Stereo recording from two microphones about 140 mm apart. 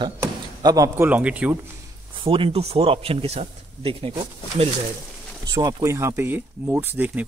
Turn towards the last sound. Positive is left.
turn(degrees=-15)  # may be behind; listen again after turning